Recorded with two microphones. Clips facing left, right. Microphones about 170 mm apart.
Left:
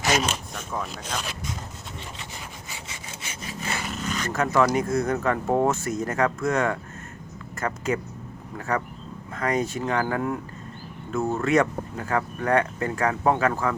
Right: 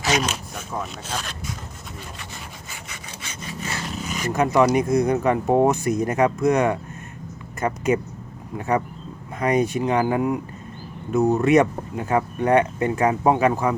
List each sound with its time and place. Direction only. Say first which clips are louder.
0.1 s speech: right 2 dB; centre (ahead or behind)
3.8 s a sound: even; centre (ahead or behind)
4.1 s speech: right 4 dB; 15° right (ahead or behind)